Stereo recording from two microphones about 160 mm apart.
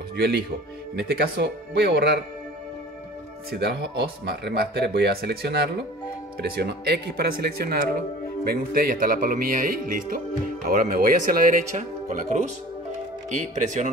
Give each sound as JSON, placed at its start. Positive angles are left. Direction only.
{"t": 0.1, "sound": "speech", "side_deg": -90}
{"t": 3.5, "sound": "speech", "side_deg": -90}
{"t": 8.5, "sound": "speech", "side_deg": -65}
{"t": 11.7, "sound": "speech", "side_deg": -50}